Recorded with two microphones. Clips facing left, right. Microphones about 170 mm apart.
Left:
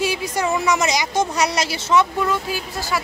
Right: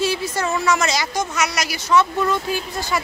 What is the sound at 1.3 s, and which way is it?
Speech, 30° left (ahead or behind).